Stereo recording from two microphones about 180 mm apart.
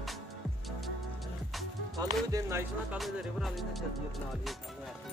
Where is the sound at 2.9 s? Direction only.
Centre (ahead or behind).